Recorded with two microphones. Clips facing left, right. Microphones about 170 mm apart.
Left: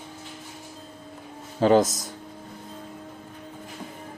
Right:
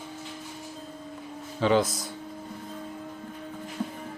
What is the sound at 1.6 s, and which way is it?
Speech, 45° left (ahead or behind).